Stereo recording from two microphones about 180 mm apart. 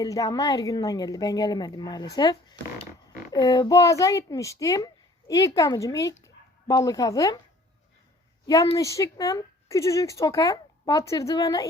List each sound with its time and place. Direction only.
0.0 s a woman's voice: 20° left (ahead or behind)
6.2 s bow-wow: 20° left (ahead or behind)
8.4 s a woman's voice: 20° left (ahead or behind)